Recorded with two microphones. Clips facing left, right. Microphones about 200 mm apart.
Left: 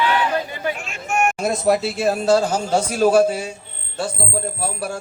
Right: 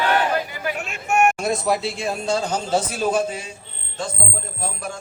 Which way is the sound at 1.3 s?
Centre (ahead or behind).